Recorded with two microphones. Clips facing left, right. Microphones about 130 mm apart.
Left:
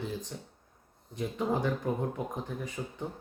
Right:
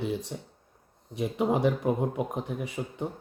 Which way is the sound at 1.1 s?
70° right (ahead or behind).